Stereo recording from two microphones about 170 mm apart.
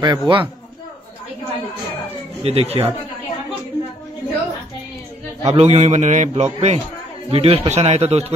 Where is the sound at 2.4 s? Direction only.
35° right (ahead or behind).